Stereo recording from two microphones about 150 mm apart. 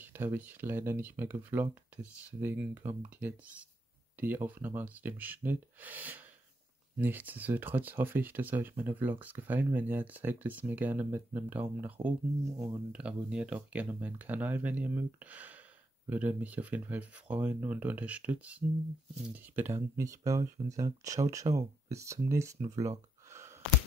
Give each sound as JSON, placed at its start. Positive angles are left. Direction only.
{"t": 0.0, "sound": "speech", "side_deg": -15}
{"t": 12.9, "sound": "speech", "side_deg": -5}
{"t": 22.8, "sound": "gasp", "side_deg": -20}